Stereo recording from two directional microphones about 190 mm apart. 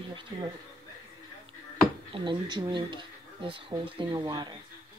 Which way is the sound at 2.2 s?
25° right (ahead or behind).